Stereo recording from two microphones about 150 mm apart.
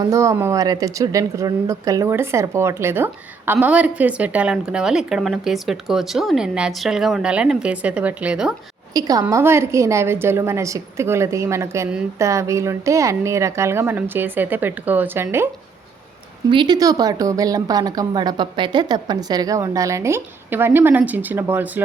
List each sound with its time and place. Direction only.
0.0 s a woman's voice: 20° right (ahead or behind)
8.9 s a woman's voice: 25° right (ahead or behind)
16.5 s a woman's voice: 30° right (ahead or behind); by 21.7 s 15° right (ahead or behind)